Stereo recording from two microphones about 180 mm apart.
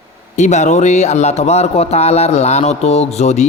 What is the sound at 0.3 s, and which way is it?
Speech, 40° left (ahead or behind).